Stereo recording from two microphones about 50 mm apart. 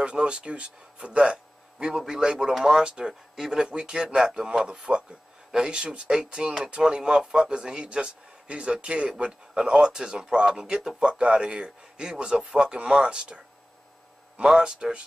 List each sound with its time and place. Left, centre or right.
0.0 s speech: centre
14.4 s speech: centre